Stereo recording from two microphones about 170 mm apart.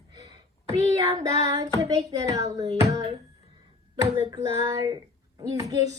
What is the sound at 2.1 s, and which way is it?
Speech, 20° right (ahead or behind).